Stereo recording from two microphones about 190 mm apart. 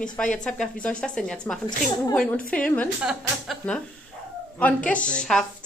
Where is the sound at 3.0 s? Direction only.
5° right (ahead or behind).